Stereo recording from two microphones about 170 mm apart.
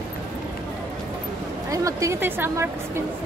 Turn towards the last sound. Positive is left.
turn(degrees=-15)  # may be behind; listen again after turning